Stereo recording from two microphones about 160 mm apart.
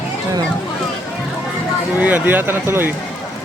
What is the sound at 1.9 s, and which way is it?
Speech, 10° right (ahead or behind).